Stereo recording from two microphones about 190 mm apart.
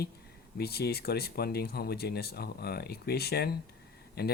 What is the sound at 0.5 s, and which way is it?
Speech, 55° left (ahead or behind).